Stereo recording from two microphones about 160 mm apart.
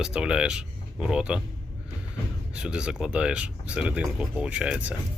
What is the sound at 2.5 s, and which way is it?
Speech, 5° right (ahead or behind).